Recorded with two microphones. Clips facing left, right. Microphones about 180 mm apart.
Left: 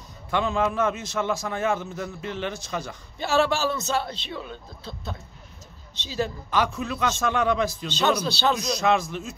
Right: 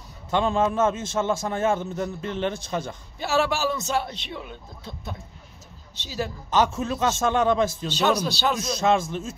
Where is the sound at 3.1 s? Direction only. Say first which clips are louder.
Left 1 dB; 10° right (ahead or behind).